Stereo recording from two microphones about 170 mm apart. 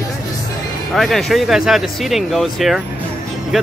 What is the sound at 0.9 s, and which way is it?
Speech, centre (ahead or behind).